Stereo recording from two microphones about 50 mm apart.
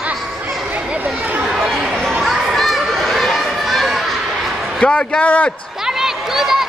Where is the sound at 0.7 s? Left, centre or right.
Right.